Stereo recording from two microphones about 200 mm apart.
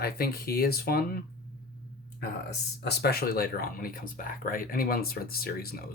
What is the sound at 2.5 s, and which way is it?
Speech, 55° left (ahead or behind).